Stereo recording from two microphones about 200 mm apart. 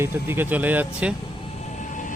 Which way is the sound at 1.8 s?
40° left (ahead or behind).